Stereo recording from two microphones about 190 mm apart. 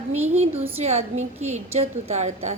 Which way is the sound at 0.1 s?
35° right (ahead or behind).